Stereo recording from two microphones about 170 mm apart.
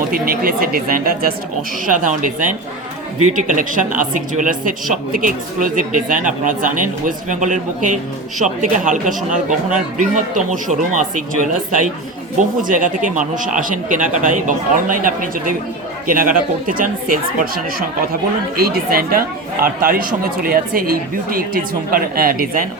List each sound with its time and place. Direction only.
0.1 s a woman's voice: 55° right (ahead or behind)
12.4 s a woman's voice: 50° right (ahead or behind)